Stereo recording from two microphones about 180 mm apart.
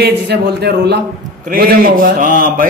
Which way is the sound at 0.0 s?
65° right (ahead or behind).